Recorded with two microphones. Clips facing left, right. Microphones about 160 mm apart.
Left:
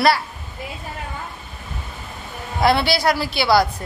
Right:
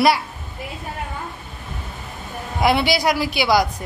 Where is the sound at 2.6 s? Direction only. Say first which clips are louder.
Even; 15° right (ahead or behind).